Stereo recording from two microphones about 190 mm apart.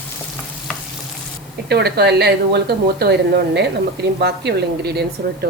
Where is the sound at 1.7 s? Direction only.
60° right (ahead or behind).